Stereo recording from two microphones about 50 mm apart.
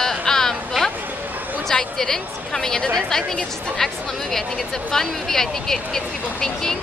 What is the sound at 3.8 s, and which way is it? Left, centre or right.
Speech, centre.